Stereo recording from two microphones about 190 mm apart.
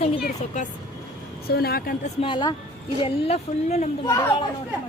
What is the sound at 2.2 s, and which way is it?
Speech, 25° left (ahead or behind).